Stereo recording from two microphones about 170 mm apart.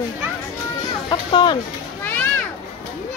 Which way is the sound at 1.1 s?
25° left (ahead or behind).